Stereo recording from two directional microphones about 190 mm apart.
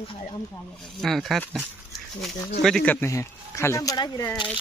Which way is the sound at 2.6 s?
5° left (ahead or behind).